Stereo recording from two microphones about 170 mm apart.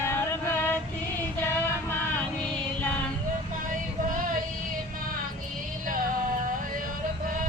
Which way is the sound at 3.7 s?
50° right (ahead or behind).